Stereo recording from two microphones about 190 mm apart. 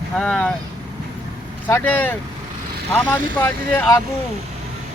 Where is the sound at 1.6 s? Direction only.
10° left (ahead or behind).